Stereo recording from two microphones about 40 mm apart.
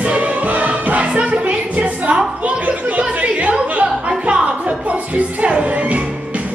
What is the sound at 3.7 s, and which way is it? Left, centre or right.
Music, right.